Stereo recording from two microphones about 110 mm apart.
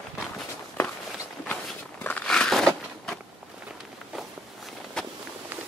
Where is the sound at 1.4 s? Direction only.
10° left (ahead or behind).